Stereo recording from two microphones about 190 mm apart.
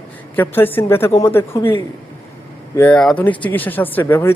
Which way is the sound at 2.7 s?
5° left (ahead or behind).